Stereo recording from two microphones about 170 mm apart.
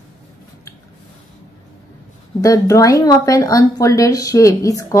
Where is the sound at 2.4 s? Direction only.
20° left (ahead or behind).